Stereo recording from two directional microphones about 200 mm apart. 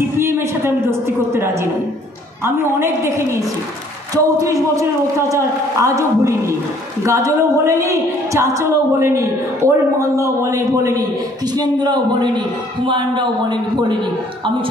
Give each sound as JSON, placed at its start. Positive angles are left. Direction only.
{"t": 0.2, "sound": "a woman's voice", "side_deg": -10}